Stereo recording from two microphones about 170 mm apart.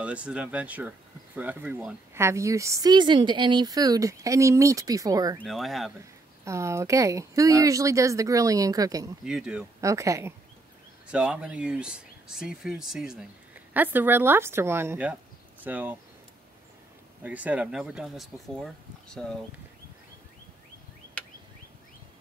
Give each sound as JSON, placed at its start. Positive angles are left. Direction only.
{"t": 0.0, "sound": "speech", "side_deg": -5}
{"t": 5.4, "sound": "speech", "side_deg": 0}
{"t": 6.4, "sound": "speech", "side_deg": -15}
{"t": 9.2, "sound": "speech", "side_deg": -5}
{"t": 9.8, "sound": "speech", "side_deg": -20}
{"t": 11.1, "sound": "speech", "side_deg": -5}
{"t": 17.2, "sound": "speech", "side_deg": -10}